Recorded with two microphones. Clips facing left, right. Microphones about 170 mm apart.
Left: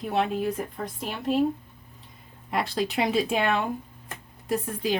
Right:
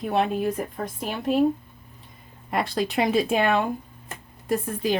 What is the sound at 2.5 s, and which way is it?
Speech, 50° right (ahead or behind).